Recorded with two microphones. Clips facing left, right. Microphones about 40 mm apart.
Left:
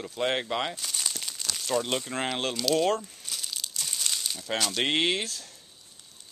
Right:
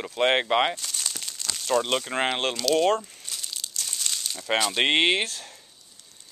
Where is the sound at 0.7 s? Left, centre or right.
Centre.